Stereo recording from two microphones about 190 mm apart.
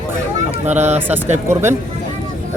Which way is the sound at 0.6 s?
35° right (ahead or behind).